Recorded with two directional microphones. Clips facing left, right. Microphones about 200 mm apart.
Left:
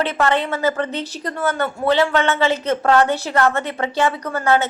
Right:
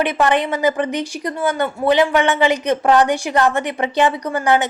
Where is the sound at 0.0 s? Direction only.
15° right (ahead or behind).